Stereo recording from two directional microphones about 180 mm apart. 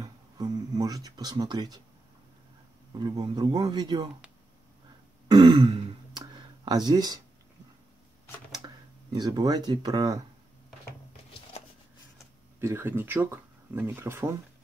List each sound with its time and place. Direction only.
0.0 s a sound: 20° right (ahead or behind)
2.9 s a man's voice: 20° right (ahead or behind)
5.3 s throat clearing: 25° right (ahead or behind)
8.5 s speech: 20° right (ahead or behind)
12.5 s speech: 15° right (ahead or behind)